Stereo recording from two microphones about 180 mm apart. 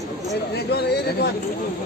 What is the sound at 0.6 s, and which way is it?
Speech, 65° left (ahead or behind).